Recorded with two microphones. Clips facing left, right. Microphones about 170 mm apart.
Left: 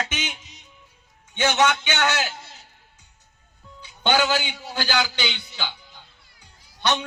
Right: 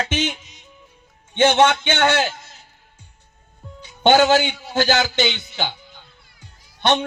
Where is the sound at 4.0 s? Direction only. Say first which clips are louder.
Right 8 dB; 45° right (ahead or behind).